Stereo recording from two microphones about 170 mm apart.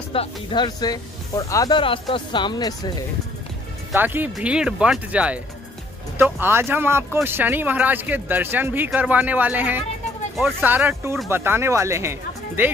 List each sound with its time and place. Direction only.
0.1 s speech: 30° left (ahead or behind)
3.9 s speech: 10° right (ahead or behind)